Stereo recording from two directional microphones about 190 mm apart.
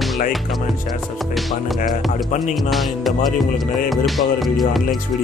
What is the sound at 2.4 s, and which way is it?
Speech, centre (ahead or behind).